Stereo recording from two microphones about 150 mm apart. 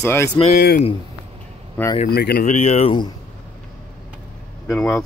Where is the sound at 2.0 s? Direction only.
90° left.